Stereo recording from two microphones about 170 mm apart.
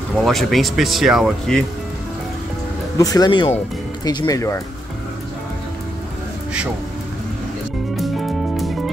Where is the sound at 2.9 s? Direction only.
20° left (ahead or behind).